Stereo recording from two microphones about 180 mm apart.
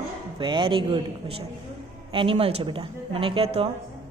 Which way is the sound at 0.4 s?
25° right (ahead or behind).